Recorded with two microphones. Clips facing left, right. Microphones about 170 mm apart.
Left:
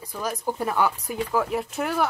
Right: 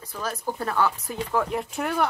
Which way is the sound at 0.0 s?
15° left (ahead or behind).